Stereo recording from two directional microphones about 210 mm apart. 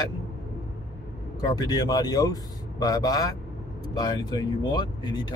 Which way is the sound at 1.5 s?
15° left (ahead or behind).